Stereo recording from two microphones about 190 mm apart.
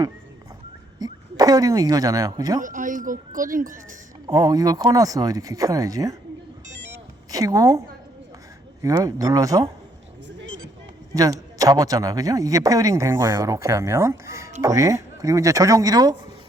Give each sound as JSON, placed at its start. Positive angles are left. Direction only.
{"t": 0.9, "sound": "speech", "side_deg": -20}
{"t": 2.6, "sound": "speech", "side_deg": -45}
{"t": 4.3, "sound": "speech", "side_deg": -20}
{"t": 7.3, "sound": "a woman's voice", "side_deg": -20}
{"t": 8.8, "sound": "a man's voice", "side_deg": -20}
{"t": 10.2, "sound": "a sound", "side_deg": -90}
{"t": 11.1, "sound": "a man's voice", "side_deg": -20}